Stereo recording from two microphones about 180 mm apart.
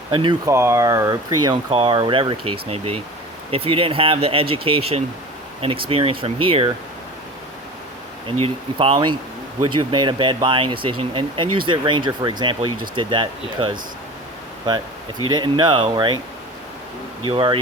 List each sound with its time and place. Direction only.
0.1 s speech: 25° right (ahead or behind)
0.5 s speech: 15° right (ahead or behind)
8.4 s speech: 30° right (ahead or behind)
15.3 s speech: 25° right (ahead or behind)
17.2 s speech: 25° right (ahead or behind)